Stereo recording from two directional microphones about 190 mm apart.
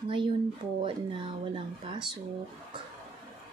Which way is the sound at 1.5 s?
25° right (ahead or behind).